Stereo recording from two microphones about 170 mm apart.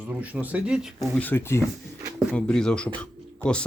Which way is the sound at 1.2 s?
15° left (ahead or behind).